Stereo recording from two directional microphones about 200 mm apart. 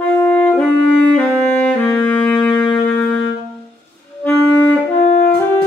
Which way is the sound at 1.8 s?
5° left (ahead or behind).